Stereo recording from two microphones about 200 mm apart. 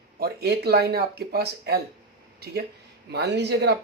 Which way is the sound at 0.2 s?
55° right (ahead or behind).